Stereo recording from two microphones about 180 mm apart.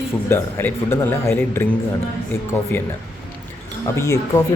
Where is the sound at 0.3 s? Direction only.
15° left (ahead or behind).